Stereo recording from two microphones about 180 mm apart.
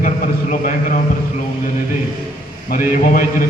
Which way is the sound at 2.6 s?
50° left (ahead or behind).